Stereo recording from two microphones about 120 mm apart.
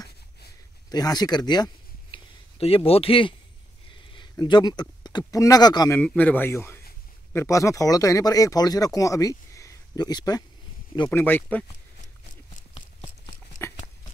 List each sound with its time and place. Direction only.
0.8 s speech: 35° left (ahead or behind)
2.6 s speech: 55° left (ahead or behind); by 5.9 s 35° left (ahead or behind)
5.9 s speech: 10° left (ahead or behind); by 10.4 s 30° left (ahead or behind)
11.1 s speech: 15° left (ahead or behind)